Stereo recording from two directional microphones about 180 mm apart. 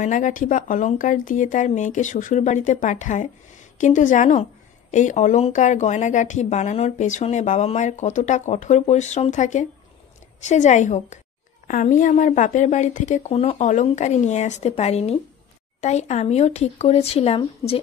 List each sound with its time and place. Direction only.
0.0 s speech: 45° left (ahead or behind)